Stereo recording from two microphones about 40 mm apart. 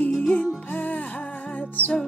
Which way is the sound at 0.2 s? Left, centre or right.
Left.